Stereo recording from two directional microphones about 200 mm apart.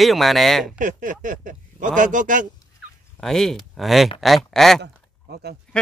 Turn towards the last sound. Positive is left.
turn(degrees=-55)  # may be behind; listen again after turning